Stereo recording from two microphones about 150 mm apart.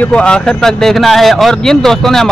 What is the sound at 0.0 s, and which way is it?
Speech, 5° left (ahead or behind).